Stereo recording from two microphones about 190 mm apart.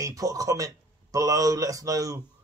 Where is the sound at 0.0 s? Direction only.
15° right (ahead or behind).